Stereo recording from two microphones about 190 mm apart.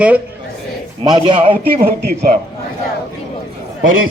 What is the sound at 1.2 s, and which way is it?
Speech, 25° right (ahead or behind).